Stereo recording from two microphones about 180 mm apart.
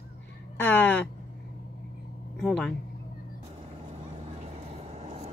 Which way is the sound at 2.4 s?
5° left (ahead or behind).